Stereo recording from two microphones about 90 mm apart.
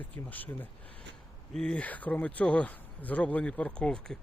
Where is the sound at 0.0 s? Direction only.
20° left (ahead or behind).